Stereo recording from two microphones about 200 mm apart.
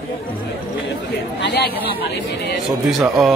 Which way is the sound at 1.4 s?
55° left (ahead or behind).